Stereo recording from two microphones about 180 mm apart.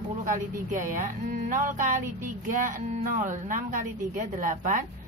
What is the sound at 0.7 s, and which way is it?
A woman's voice, 45° right (ahead or behind).